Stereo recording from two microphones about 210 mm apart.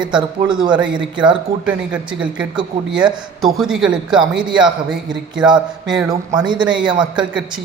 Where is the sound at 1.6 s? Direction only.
5° right (ahead or behind).